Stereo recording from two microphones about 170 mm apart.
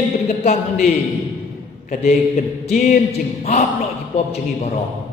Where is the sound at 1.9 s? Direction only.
50° left (ahead or behind).